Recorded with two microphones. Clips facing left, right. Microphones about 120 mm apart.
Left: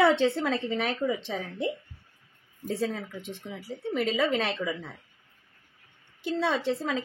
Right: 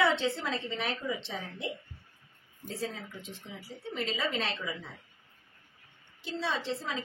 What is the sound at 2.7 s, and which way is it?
A woman's voice, 60° left (ahead or behind).